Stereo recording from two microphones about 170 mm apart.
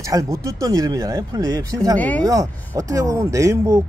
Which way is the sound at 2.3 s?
20° right (ahead or behind).